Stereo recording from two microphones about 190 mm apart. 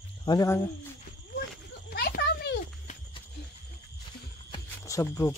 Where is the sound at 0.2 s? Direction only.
20° left (ahead or behind).